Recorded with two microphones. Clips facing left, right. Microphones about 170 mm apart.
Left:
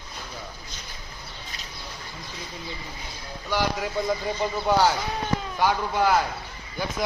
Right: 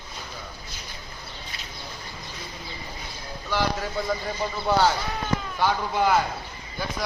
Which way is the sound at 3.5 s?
15° left (ahead or behind).